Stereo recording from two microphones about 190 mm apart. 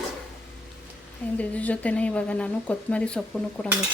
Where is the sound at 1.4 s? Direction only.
5° left (ahead or behind).